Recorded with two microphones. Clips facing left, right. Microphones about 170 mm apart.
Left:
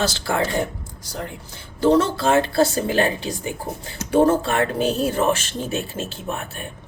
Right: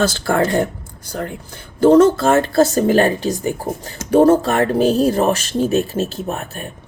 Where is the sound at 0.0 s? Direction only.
50° right (ahead or behind).